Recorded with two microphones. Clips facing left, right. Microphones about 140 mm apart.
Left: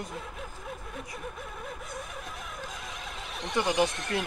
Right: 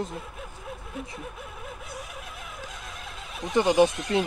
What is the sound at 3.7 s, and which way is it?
Speech, 15° right (ahead or behind).